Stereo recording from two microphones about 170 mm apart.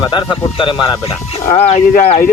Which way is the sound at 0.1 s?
30° left (ahead or behind).